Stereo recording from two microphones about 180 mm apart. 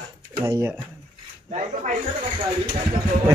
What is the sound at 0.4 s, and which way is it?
Speech, 15° right (ahead or behind).